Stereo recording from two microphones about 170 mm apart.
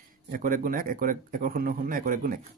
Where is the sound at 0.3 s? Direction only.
55° right (ahead or behind).